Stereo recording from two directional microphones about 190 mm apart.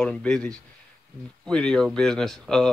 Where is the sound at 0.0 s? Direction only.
5° left (ahead or behind).